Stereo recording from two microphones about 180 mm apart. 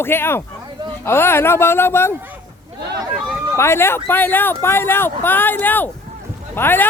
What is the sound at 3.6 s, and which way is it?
Speech, 15° left (ahead or behind).